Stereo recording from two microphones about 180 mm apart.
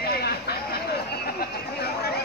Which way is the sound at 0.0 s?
60° left (ahead or behind).